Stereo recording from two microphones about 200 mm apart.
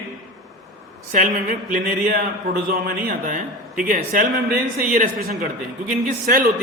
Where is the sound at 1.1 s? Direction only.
40° right (ahead or behind).